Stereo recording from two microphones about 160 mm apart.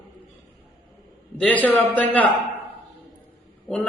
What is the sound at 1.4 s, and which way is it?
Speech, 10° left (ahead or behind).